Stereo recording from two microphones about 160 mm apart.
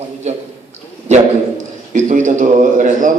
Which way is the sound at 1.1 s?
50° right (ahead or behind).